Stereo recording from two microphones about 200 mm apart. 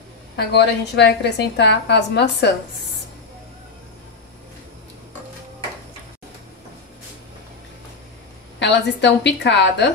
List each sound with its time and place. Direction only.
0.4 s a woman's voice: 55° left (ahead or behind)
8.5 s a woman's voice: 60° left (ahead or behind)